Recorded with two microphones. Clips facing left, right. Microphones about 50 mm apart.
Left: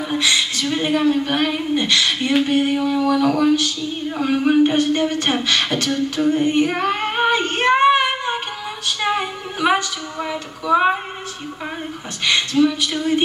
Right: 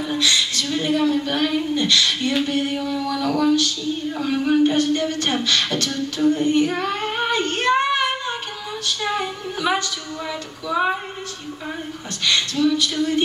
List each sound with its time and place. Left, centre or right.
0.1 s a woman's voice: left
12.3 s a woman's voice: left